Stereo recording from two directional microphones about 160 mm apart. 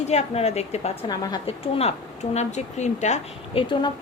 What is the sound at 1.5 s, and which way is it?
A woman's voice, 40° left (ahead or behind).